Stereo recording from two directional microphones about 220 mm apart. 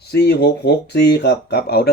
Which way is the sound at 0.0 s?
45° left (ahead or behind).